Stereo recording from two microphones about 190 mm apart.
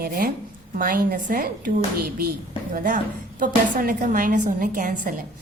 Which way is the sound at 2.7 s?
45° right (ahead or behind).